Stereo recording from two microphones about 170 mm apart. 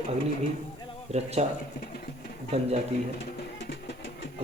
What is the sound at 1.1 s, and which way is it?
Speech, 40° right (ahead or behind).